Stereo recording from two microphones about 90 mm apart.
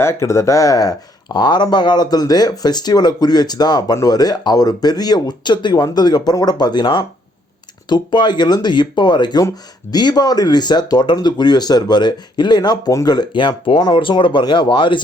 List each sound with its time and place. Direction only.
0.0 s speech: 30° left (ahead or behind); by 15.0 s 65° left (ahead or behind)